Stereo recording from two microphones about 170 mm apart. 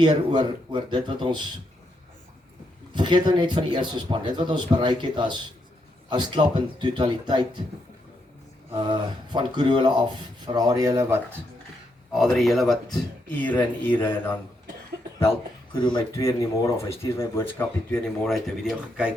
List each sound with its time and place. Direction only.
0.0 s speech: 25° right (ahead or behind)
2.9 s speech: 25° right (ahead or behind)
8.7 s speech: 25° right (ahead or behind)
12.1 s speech: centre (ahead or behind)
16.0 s speech: 15° left (ahead or behind); by 19.1 s 5° right (ahead or behind)